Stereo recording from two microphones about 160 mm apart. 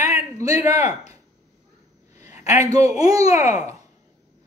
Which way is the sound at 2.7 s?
20° right (ahead or behind).